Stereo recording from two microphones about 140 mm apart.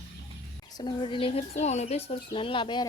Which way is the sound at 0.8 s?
35° left (ahead or behind).